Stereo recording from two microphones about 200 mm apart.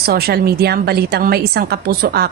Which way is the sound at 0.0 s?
50° right (ahead or behind).